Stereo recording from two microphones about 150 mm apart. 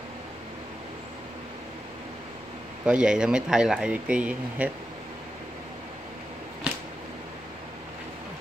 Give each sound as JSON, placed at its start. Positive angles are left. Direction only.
{"t": 2.8, "sound": "speech", "side_deg": -5}